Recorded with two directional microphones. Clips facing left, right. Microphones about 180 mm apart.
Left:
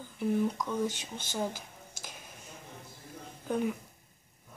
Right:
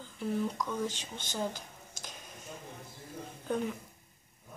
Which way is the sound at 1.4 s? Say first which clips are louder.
Left 1 dB; 5° left (ahead or behind).